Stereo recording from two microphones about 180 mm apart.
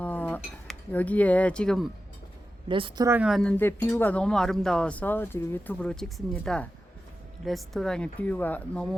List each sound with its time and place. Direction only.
0.0 s speech: 10° left (ahead or behind)
2.6 s speech: 30° right (ahead or behind)
3.1 s speech: 5° right (ahead or behind)
3.6 s speech: 10° left (ahead or behind)